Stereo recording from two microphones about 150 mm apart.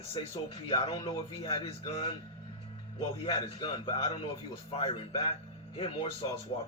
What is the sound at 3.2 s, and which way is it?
Speech, 30° left (ahead or behind).